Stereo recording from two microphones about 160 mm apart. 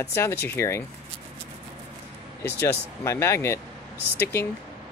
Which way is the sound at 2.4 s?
15° left (ahead or behind).